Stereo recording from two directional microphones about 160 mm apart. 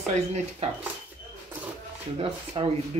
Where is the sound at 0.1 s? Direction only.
45° right (ahead or behind).